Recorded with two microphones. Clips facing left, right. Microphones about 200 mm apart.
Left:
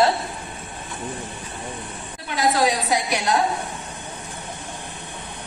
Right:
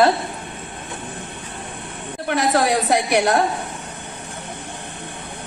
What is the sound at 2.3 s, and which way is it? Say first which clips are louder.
A woman's voice: right 2 dB; 60° right (ahead or behind).